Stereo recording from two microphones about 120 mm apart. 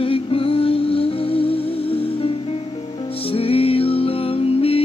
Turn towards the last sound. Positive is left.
turn(degrees=50)  # may be behind; listen again after turning